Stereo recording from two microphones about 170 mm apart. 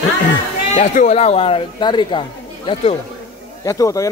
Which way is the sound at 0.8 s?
45° left (ahead or behind).